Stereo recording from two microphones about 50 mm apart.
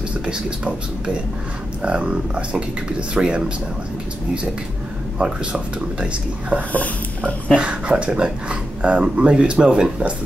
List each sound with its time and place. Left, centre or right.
0.3 s speech: centre
5.2 s speech: right
6.7 s speech: left
7.5 s speech: right